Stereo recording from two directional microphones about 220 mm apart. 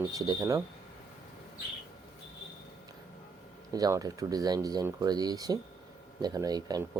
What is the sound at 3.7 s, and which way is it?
Speech, 15° right (ahead or behind).